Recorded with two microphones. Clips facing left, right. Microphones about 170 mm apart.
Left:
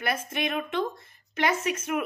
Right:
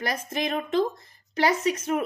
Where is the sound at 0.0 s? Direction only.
35° right (ahead or behind).